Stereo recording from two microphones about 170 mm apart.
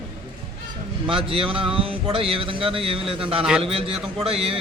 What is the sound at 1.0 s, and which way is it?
Speech, 30° right (ahead or behind).